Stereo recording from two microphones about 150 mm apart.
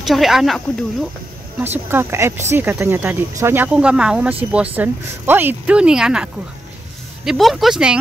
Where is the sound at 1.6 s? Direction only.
15° right (ahead or behind).